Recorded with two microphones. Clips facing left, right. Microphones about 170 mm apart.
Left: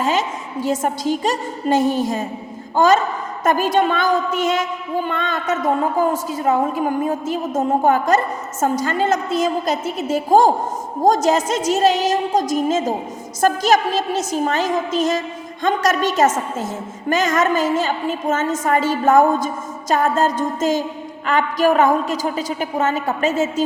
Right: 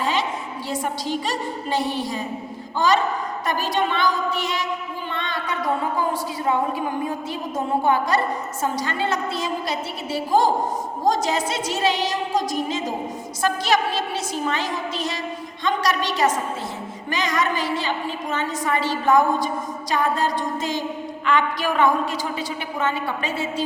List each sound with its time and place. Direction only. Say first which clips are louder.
0.0 s a woman's voice: left 4 dB; 45° left (ahead or behind)